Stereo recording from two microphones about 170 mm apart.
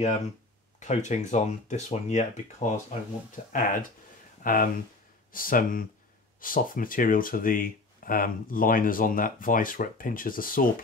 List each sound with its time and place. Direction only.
0.7 s speech: 45° left (ahead or behind)